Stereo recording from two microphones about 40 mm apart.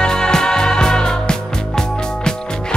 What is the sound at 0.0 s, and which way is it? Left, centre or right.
Music, centre.